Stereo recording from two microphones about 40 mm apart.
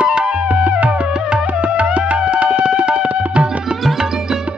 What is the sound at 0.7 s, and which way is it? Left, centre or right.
Music, right.